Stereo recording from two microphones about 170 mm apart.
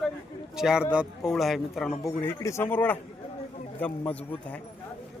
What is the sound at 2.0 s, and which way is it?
Speech, 15° left (ahead or behind).